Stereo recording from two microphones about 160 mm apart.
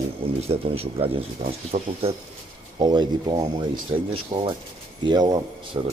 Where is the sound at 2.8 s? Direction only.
25° right (ahead or behind).